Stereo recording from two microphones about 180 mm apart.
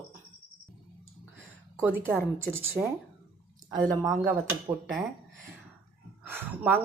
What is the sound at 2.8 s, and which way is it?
Speech, centre (ahead or behind).